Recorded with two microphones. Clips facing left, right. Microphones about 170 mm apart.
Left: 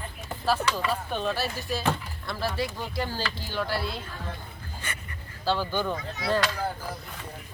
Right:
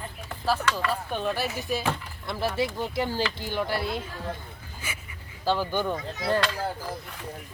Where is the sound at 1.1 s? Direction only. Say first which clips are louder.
Right 1 dB; 10° right (ahead or behind).